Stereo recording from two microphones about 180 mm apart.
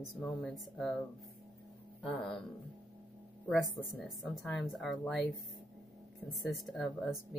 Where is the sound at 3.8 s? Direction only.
Centre (ahead or behind).